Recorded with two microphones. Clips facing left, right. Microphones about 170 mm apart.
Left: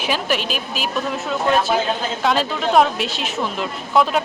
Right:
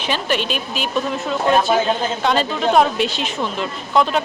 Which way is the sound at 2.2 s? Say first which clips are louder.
Even; centre (ahead or behind).